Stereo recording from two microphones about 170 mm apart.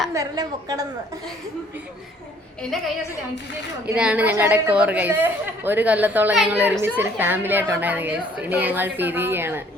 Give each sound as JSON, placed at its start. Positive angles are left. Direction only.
{"t": 0.1, "sound": "a woman's voice", "side_deg": -20}
{"t": 2.6, "sound": "a woman's voice", "side_deg": 0}